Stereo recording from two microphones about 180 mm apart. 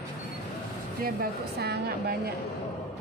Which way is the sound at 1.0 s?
55° right (ahead or behind).